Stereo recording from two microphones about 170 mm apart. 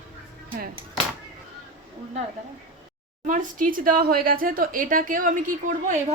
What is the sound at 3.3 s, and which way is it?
Speech, 50° right (ahead or behind).